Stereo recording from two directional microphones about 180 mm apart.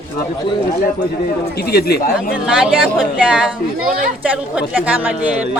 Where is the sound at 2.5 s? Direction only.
5° right (ahead or behind).